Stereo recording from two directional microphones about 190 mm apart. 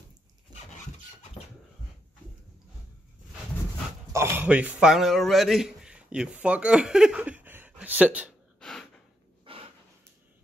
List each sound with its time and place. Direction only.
4.1 s a man's voice: 15° right (ahead or behind)
8.5 s gasp: centre (ahead or behind)
9.4 s a sound: 30° right (ahead or behind)